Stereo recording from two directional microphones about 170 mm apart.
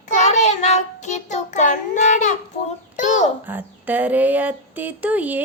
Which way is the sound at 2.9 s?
45° left (ahead or behind).